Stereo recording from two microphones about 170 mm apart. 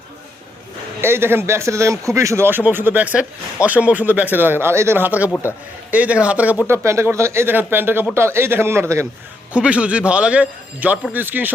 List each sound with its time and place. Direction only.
1.0 s speech: 15° right (ahead or behind)
5.3 s a man's voice: 15° left (ahead or behind)
5.9 s speech: 10° right (ahead or behind)